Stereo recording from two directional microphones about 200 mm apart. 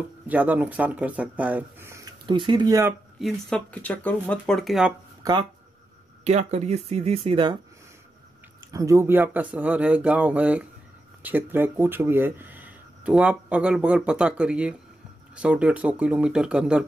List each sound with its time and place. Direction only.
0.0 s speech: 10° right (ahead or behind)
3.2 s speech: centre (ahead or behind)
5.2 s speech: 25° right (ahead or behind)
8.7 s speech: 15° right (ahead or behind)